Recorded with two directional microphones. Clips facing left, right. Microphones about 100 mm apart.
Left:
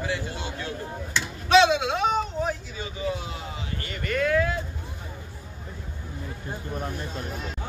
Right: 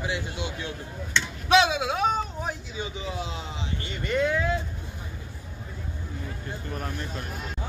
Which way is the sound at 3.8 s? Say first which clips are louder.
Even; 20° right (ahead or behind).